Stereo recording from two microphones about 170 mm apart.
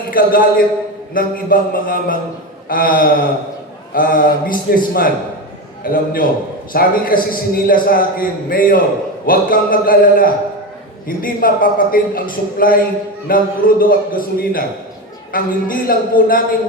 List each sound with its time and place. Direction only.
0.1 s a man's voice: 55° left (ahead or behind)